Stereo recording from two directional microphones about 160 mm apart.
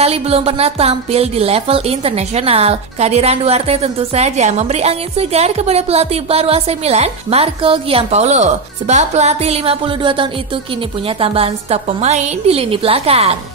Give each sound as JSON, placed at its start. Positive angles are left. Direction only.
{"t": 0.0, "sound": "speech", "side_deg": -40}